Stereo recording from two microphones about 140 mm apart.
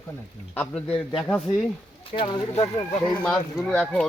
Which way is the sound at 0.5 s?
10° left (ahead or behind).